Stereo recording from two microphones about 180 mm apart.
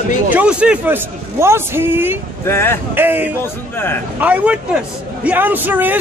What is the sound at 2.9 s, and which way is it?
Speech, 10° right (ahead or behind).